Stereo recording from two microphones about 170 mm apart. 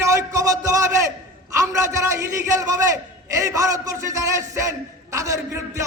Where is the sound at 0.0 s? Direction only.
20° right (ahead or behind).